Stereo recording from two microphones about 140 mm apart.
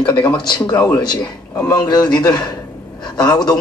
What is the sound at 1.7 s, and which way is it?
A man's voice, 30° left (ahead or behind).